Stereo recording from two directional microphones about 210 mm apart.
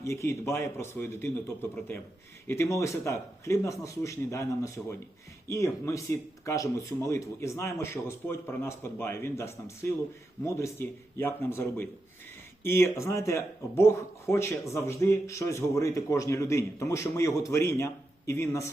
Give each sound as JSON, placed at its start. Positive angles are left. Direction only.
{"t": 0.0, "sound": "speech", "side_deg": 15}